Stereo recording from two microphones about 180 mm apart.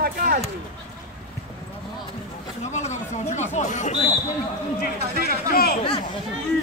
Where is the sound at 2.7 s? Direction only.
40° left (ahead or behind).